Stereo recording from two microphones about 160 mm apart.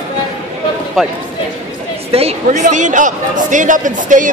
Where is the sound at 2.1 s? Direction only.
40° right (ahead or behind).